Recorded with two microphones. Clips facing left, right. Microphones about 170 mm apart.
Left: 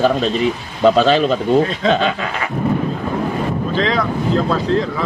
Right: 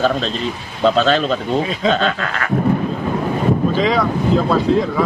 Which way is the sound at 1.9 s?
15° left (ahead or behind).